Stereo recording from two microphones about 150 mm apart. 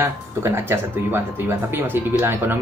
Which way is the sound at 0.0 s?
15° right (ahead or behind).